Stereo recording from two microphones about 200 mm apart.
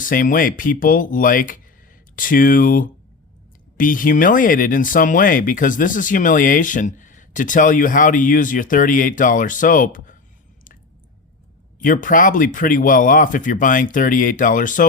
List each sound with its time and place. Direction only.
0.0 s speech: 40° left (ahead or behind)
11.8 s speech: 40° left (ahead or behind)